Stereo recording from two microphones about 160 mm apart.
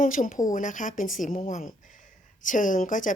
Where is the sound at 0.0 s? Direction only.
55° left (ahead or behind).